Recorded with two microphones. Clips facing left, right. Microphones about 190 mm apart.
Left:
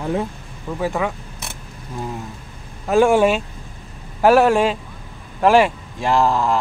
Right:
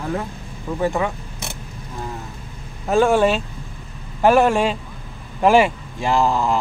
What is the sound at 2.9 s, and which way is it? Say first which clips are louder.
Speech: left 1 dB; 10° left (ahead or behind).